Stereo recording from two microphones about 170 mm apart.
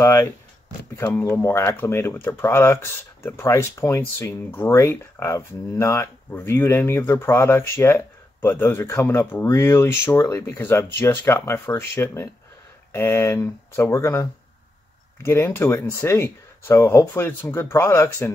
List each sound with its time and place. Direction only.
0.0 s speech: 20° left (ahead or behind)
15.2 s speech: 15° left (ahead or behind)